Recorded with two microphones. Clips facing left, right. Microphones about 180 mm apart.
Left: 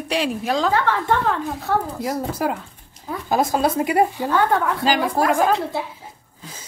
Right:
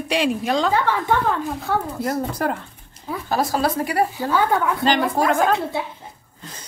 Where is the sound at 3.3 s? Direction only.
20° left (ahead or behind).